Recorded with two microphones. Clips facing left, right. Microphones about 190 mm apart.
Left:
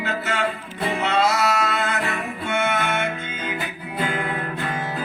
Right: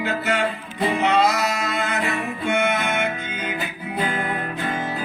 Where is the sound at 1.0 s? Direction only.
15° right (ahead or behind).